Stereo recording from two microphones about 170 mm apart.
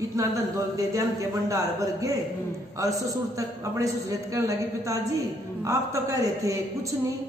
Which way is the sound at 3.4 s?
20° right (ahead or behind).